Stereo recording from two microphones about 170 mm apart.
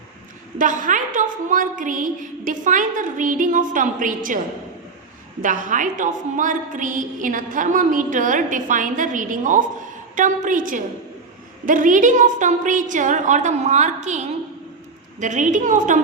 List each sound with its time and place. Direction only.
0.6 s a woman's voice: 50° right (ahead or behind)
5.4 s a woman's voice: 50° right (ahead or behind)